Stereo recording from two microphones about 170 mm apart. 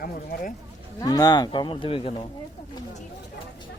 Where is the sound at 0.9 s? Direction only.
20° left (ahead or behind).